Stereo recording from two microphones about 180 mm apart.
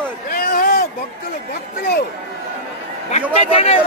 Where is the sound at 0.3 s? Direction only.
55° left (ahead or behind).